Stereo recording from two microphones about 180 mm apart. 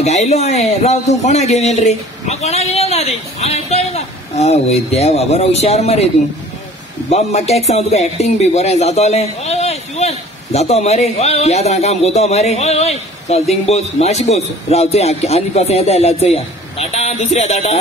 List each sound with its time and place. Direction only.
0.0 s speech: 40° left (ahead or behind)
7.1 s speech: 35° left (ahead or behind)